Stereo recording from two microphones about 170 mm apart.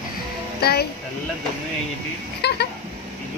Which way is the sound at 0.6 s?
70° left (ahead or behind).